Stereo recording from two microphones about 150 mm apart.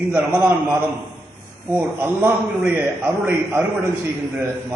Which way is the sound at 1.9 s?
10° right (ahead or behind).